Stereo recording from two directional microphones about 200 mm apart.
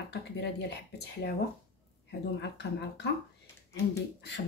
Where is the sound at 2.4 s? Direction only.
60° left (ahead or behind).